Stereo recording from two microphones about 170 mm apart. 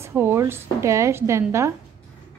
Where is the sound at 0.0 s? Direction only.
15° right (ahead or behind).